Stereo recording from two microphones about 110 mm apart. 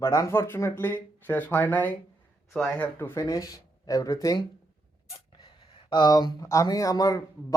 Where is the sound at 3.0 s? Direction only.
20° left (ahead or behind).